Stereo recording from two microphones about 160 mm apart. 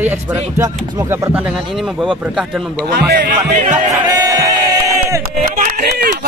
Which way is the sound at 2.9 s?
90° right.